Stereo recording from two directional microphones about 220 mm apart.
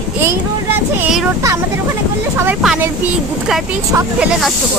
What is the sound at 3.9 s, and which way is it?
Speech, 5° right (ahead or behind).